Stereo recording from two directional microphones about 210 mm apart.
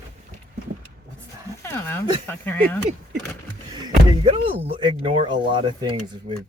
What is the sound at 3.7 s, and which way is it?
Speech, 25° right (ahead or behind).